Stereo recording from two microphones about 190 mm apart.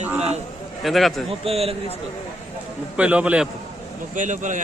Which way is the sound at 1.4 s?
30° right (ahead or behind).